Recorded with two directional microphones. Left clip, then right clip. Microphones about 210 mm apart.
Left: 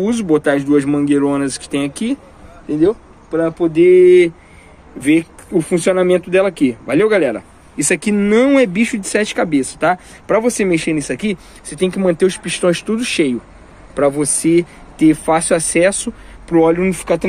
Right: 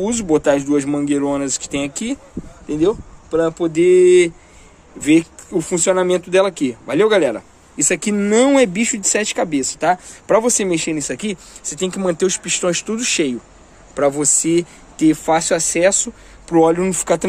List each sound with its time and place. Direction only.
0.0 s speech: 5° right (ahead or behind)
2.7 s speech: 25° right (ahead or behind); by 16.1 s centre (ahead or behind)
16.4 s speech: 15° right (ahead or behind)